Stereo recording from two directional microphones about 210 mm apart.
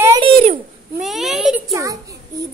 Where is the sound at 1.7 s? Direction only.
15° right (ahead or behind).